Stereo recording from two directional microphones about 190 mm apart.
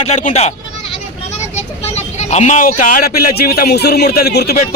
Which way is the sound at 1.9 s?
35° left (ahead or behind).